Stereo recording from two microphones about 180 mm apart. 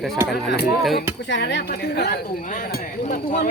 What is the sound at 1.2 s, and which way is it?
Speech, 75° left (ahead or behind).